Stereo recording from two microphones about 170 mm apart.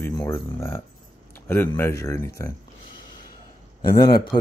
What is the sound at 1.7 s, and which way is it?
Speech, 15° left (ahead or behind).